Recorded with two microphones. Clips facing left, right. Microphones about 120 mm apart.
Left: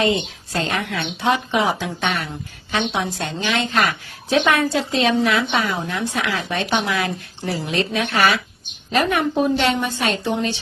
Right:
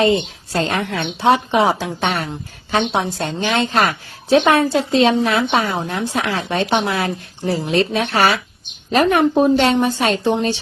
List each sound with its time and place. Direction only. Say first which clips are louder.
0.0 s a woman's voice: right 4 dB; 35° right (ahead or behind)